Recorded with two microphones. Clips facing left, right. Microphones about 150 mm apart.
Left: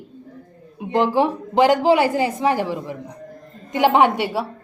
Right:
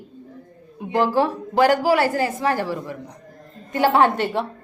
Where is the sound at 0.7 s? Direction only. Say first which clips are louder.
Left 1 dB; 20° left (ahead or behind).